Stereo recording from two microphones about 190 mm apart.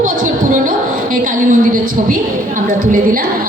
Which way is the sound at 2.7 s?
45° right (ahead or behind).